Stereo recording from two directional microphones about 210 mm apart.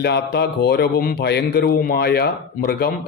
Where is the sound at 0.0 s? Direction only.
50° left (ahead or behind).